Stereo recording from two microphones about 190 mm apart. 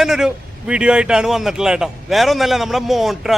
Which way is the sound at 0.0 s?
5° right (ahead or behind).